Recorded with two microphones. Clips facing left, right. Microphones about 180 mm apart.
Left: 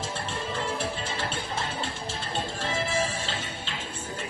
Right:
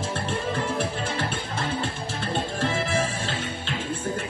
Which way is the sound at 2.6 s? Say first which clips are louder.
Right 2 dB; 55° right (ahead or behind).